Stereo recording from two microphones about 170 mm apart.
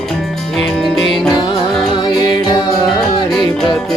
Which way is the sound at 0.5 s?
Centre (ahead or behind).